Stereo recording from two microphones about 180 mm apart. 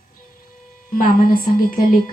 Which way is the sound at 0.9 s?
50° left (ahead or behind).